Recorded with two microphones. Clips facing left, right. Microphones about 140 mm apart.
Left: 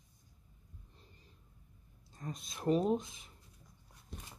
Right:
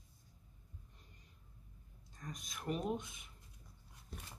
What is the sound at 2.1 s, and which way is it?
Speech, 25° left (ahead or behind).